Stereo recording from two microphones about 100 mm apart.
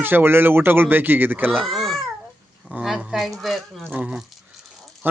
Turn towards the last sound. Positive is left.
turn(degrees=-20)  # may be behind; listen again after turning